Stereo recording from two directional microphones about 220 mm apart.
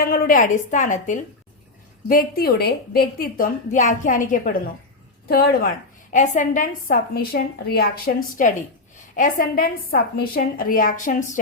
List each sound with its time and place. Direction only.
0.0 s a woman's voice: 40° left (ahead or behind)
6.1 s a woman's voice: 35° left (ahead or behind)